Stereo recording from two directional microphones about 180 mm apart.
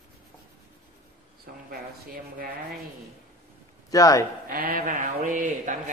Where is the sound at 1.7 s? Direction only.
55° right (ahead or behind).